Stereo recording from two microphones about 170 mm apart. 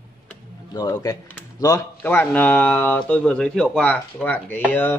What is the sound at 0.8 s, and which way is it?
Speech, 20° left (ahead or behind).